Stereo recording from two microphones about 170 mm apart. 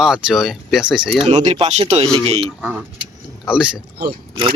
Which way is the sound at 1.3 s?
45° right (ahead or behind).